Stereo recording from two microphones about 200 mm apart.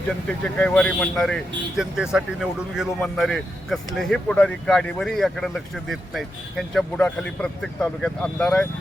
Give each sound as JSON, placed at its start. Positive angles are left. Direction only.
{"t": 0.3, "sound": "speech", "side_deg": 5}